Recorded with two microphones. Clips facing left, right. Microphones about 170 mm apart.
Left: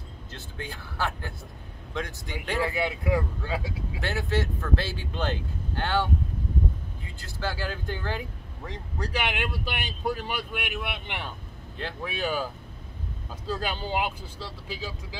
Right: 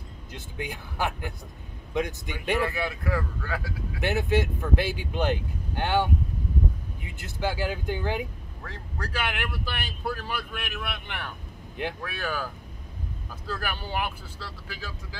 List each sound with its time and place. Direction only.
0.3 s speech: 15° right (ahead or behind)
2.6 s speech: 15° left (ahead or behind)
4.0 s speech: 20° right (ahead or behind)
8.6 s speech: 15° left (ahead or behind)
13.5 s speech: 20° left (ahead or behind)